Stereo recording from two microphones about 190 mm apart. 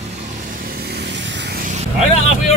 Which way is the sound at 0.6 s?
55° right (ahead or behind).